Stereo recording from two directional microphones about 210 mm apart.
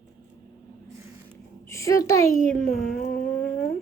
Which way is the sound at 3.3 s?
5° left (ahead or behind).